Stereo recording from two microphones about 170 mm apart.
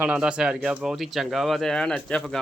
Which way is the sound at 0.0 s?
5° right (ahead or behind).